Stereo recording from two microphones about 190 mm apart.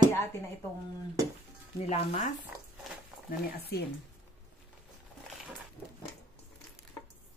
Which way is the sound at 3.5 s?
55° left (ahead or behind).